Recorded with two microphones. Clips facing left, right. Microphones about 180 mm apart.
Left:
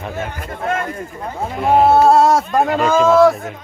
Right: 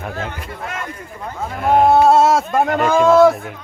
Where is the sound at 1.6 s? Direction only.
5° left (ahead or behind).